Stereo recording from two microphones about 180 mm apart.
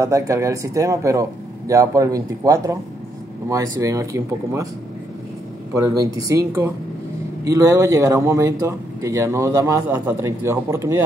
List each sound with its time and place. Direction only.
0.0 s speech: 15° right (ahead or behind)
5.8 s speech: 20° right (ahead or behind)